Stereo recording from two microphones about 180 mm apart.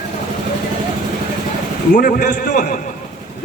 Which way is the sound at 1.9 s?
45° left (ahead or behind).